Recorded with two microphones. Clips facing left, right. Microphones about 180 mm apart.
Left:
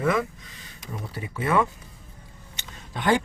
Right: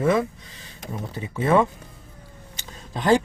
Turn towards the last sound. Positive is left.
turn(degrees=-30)  # may be behind; listen again after turning